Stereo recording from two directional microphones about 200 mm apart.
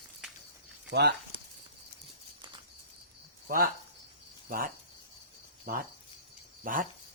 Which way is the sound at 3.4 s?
45° right (ahead or behind).